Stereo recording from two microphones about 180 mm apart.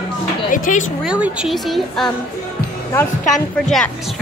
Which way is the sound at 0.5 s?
45° left (ahead or behind).